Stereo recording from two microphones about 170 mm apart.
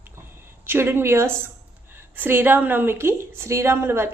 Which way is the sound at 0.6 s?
15° right (ahead or behind).